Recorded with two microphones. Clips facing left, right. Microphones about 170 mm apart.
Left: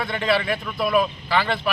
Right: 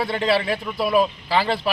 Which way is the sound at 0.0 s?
35° right (ahead or behind).